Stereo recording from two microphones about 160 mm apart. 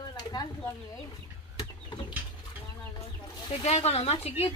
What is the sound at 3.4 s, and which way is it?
Speech, 40° left (ahead or behind).